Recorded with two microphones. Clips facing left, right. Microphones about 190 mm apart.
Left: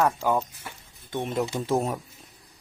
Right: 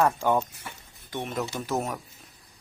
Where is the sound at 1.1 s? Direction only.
25° left (ahead or behind).